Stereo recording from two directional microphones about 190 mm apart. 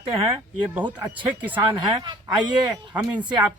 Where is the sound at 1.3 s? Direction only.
10° right (ahead or behind).